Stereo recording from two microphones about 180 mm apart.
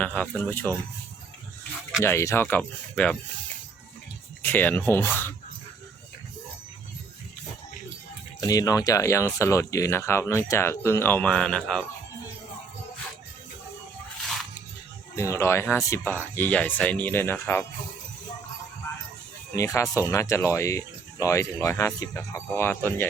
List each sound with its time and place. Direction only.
0.0 s speech: 5° left (ahead or behind)
2.0 s speech: 15° left (ahead or behind)
4.4 s speech: 10° left (ahead or behind)
8.4 s speech: 20° left (ahead or behind); by 11.9 s 5° left (ahead or behind)
15.1 s speech: 15° left (ahead or behind)
19.5 s speech: 15° left (ahead or behind)